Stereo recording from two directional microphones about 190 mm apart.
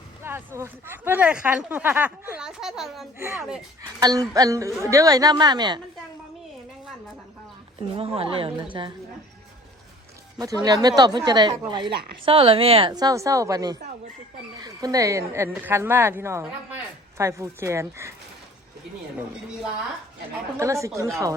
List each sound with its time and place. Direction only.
0.2 s speech: 10° right (ahead or behind)
3.2 s a woman's voice: 15° right (ahead or behind)
7.8 s a woman's voice: 30° right (ahead or behind)
10.3 s a woman's voice: 20° right (ahead or behind)
20.6 s speech: 15° right (ahead or behind)